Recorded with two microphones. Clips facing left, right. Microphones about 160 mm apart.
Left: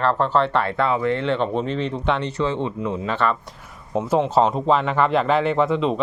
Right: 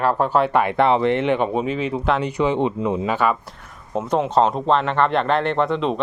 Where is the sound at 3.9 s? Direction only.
Centre (ahead or behind).